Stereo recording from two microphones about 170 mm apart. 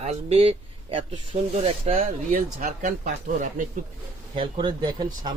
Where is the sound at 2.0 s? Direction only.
50° right (ahead or behind).